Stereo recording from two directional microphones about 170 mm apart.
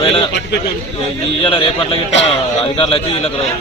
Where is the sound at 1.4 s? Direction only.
30° left (ahead or behind).